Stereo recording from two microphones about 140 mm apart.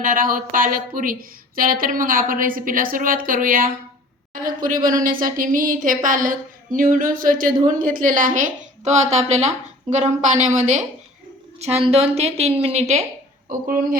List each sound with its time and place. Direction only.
0.0 s a woman's voice: 80° right; by 10.8 s 60° right (ahead or behind)
11.6 s a woman's voice: 50° right (ahead or behind)
13.5 s speech: 80° right